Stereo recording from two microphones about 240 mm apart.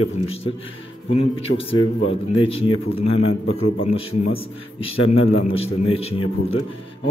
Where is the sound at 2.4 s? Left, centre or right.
Left.